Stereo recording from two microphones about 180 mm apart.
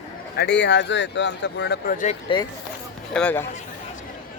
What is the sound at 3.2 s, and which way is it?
Speech, 5° left (ahead or behind).